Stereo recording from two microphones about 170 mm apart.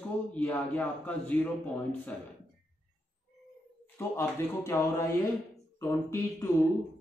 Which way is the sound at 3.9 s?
15° left (ahead or behind).